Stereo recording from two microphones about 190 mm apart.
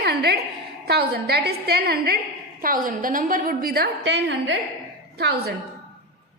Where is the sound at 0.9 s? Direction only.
60° right (ahead or behind).